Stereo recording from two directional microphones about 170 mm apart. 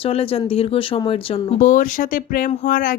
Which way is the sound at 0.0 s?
35° left (ahead or behind).